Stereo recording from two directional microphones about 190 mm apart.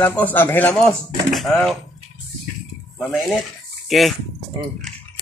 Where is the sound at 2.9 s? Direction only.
Centre (ahead or behind).